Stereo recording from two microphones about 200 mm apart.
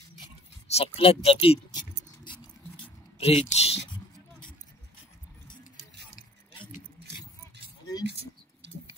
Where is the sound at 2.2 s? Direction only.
25° left (ahead or behind).